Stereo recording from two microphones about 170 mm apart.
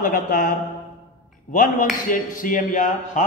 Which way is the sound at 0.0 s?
55° left (ahead or behind).